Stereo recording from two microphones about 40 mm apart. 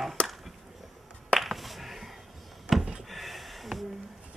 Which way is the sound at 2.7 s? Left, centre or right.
Right.